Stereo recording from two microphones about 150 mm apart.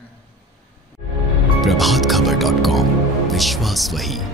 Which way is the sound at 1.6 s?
Centre (ahead or behind).